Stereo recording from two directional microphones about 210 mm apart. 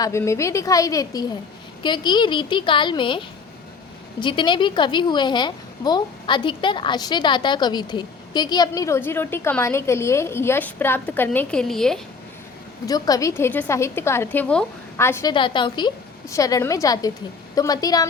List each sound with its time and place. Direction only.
0.0 s a woman's voice: 15° left (ahead or behind)
4.2 s a woman's voice: 20° left (ahead or behind); by 11.9 s centre (ahead or behind)
12.8 s a woman's voice: 15° left (ahead or behind)